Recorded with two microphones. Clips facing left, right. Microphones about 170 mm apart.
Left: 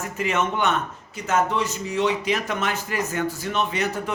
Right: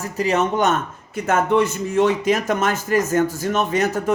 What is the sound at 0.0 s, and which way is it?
A man's voice, 35° right (ahead or behind).